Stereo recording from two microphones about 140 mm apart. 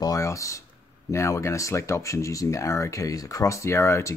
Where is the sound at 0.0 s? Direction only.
25° left (ahead or behind).